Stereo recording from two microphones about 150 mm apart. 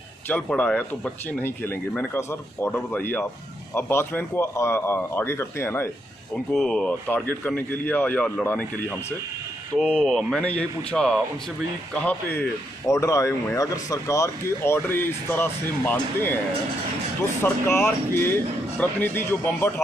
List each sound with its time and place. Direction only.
0.3 s a man's voice: 10° left (ahead or behind)
6.3 s a man's voice: 5° left (ahead or behind)
9.8 s a man's voice: 5° left (ahead or behind)
17.4 s a man's voice: 15° left (ahead or behind)